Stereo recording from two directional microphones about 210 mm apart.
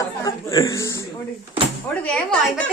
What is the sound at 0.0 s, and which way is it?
Chuckle, 15° left (ahead or behind).